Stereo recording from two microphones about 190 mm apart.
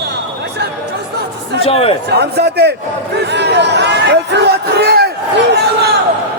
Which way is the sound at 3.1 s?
65° right (ahead or behind).